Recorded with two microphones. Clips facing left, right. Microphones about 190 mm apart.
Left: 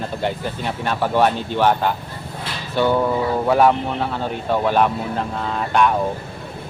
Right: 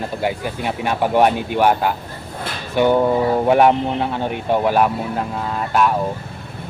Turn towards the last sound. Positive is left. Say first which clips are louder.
# even
turn(degrees=-5)  # may be behind; listen again after turning